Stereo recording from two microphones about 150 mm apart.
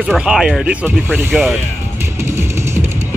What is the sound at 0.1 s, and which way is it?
Speech, 5° right (ahead or behind).